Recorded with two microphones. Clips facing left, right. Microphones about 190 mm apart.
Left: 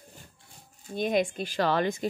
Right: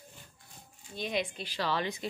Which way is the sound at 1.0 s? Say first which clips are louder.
Left 8 dB; 50° left (ahead or behind).